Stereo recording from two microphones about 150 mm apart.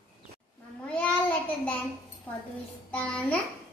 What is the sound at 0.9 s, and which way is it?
Child singing, 10° left (ahead or behind).